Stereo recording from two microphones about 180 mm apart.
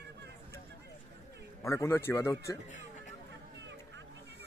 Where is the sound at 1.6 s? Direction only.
15° left (ahead or behind).